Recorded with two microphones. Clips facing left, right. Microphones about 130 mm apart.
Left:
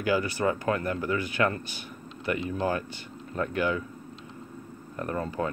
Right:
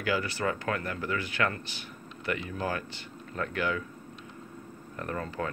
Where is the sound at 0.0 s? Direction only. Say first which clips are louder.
Left 4 dB; 20° left (ahead or behind).